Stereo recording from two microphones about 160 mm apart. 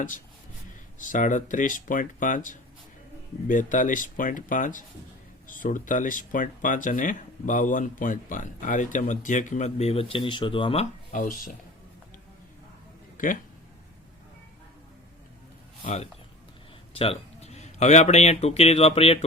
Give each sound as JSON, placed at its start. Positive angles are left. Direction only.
{"t": 0.9, "sound": "speech", "side_deg": 55}
{"t": 11.1, "sound": "speech", "side_deg": 55}
{"t": 13.1, "sound": "speech", "side_deg": 55}
{"t": 15.8, "sound": "speech", "side_deg": 45}